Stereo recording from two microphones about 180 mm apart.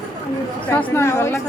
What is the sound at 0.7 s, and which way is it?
Speech, 10° left (ahead or behind).